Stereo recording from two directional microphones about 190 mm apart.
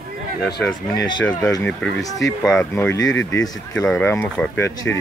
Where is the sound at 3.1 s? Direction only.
80° left.